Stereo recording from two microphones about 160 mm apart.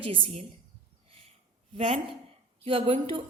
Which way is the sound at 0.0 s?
35° right (ahead or behind).